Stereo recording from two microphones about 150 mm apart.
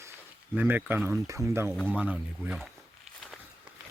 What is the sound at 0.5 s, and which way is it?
Speech, 15° right (ahead or behind).